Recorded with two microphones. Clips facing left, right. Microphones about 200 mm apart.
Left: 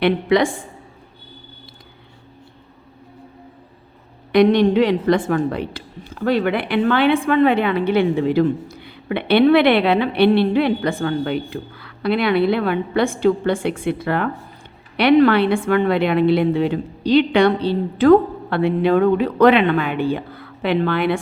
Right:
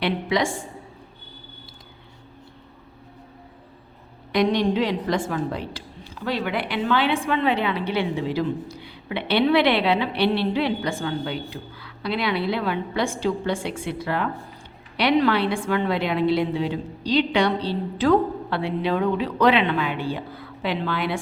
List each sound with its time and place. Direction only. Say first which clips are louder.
0.0 s a woman's voice: left 7 dB; 60° left (ahead or behind)
4.3 s a woman's voice: left 7 dB; 60° left (ahead or behind)